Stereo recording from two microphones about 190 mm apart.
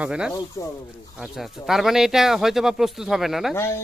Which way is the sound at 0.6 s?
15° left (ahead or behind).